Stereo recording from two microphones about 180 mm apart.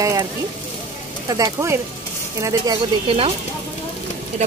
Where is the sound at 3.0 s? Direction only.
30° right (ahead or behind).